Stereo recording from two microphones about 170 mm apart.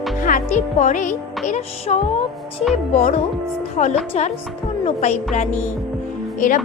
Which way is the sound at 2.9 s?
40° left (ahead or behind).